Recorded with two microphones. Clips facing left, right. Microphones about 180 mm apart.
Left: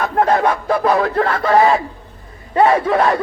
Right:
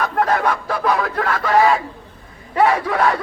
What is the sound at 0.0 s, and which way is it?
Speech, 30° left (ahead or behind).